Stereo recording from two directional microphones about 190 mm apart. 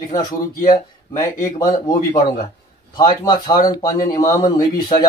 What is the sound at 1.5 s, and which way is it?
A man's voice, 20° left (ahead or behind).